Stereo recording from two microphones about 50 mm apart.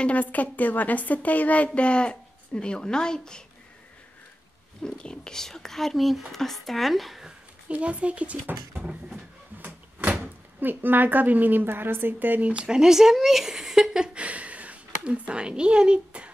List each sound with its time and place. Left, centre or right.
0.0 s a woman's voice: left; by 3.4 s centre
4.8 s speech: centre
7.6 s speech: right
9.5 s a sound: right
10.6 s a woman's voice: right
12.5 s speech: centre
14.2 s speech: right